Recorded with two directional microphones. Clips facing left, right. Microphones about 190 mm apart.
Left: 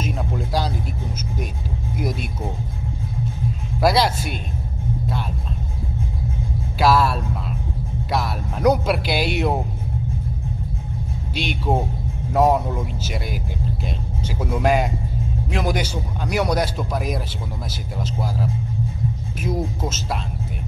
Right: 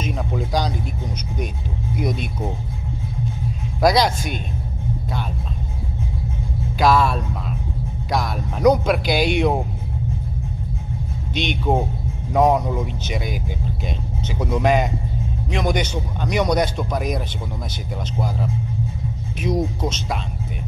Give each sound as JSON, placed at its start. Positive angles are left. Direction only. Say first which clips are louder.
{"t": 0.0, "sound": "vehicle", "louder": "right 1 dB", "side_deg": 5}
{"t": 3.8, "sound": "speech", "louder": "right 1 dB", "side_deg": 5}
{"t": 6.8, "sound": "music", "louder": "right 1 dB", "side_deg": 5}
{"t": 8.1, "sound": "a sound", "louder": "right 1 dB", "side_deg": 5}
{"t": 11.3, "sound": "speech", "louder": "right 2 dB", "side_deg": 5}
{"t": 14.4, "sound": "speech", "louder": "right 1 dB", "side_deg": 5}
{"t": 19.4, "sound": "speech", "louder": "right 3 dB", "side_deg": 5}